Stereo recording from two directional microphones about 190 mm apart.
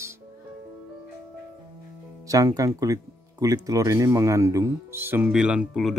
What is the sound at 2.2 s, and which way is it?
Speech, 15° right (ahead or behind).